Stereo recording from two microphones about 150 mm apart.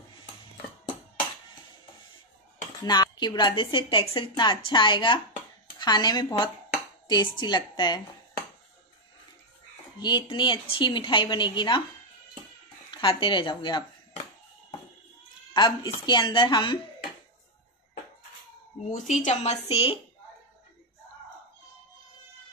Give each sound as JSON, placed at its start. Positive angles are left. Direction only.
{"t": 2.8, "sound": "a woman's voice", "side_deg": 30}
{"t": 9.9, "sound": "a woman's voice", "side_deg": 30}
{"t": 12.9, "sound": "a woman's voice", "side_deg": 35}
{"t": 15.5, "sound": "a woman's voice", "side_deg": 30}
{"t": 18.9, "sound": "speech", "side_deg": 55}